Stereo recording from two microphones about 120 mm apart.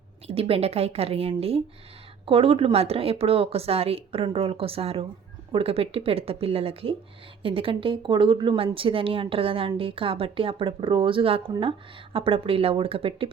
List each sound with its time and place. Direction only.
0.3 s a woman's voice: 55° right (ahead or behind)